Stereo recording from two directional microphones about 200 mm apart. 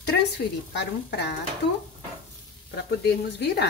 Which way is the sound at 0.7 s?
60° left (ahead or behind).